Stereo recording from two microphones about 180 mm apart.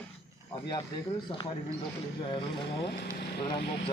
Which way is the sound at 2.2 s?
25° left (ahead or behind).